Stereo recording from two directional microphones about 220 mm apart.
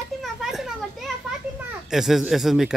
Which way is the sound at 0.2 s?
Centre (ahead or behind).